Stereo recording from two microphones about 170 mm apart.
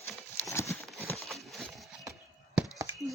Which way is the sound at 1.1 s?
Centre (ahead or behind).